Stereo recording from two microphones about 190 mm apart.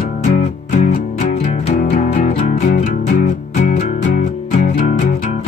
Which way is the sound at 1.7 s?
35° left (ahead or behind).